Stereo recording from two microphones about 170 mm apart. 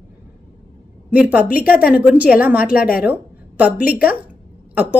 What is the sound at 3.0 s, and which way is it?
Speech, 10° right (ahead or behind).